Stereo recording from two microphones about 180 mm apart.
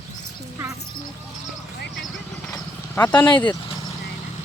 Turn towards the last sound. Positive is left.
turn(degrees=25)  # may be behind; listen again after turning